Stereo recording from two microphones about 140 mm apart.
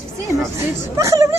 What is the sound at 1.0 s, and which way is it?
Speech, 20° right (ahead or behind).